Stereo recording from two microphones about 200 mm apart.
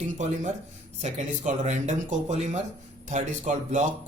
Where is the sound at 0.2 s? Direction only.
35° right (ahead or behind).